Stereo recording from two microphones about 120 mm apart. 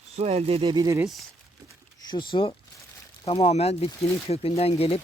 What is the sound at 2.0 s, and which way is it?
Speech, 40° left (ahead or behind).